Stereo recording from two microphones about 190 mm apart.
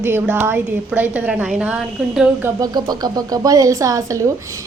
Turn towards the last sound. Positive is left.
turn(degrees=-15)  # may be behind; listen again after turning